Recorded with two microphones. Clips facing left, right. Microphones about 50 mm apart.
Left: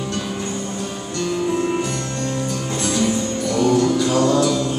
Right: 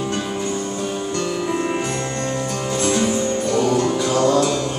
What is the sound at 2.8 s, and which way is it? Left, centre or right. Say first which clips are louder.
Music: right 1 dB; right.